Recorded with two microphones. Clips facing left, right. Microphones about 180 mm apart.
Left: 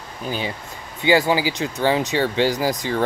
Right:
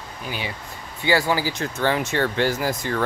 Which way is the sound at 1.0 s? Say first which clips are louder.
Left 4 dB; 15° left (ahead or behind).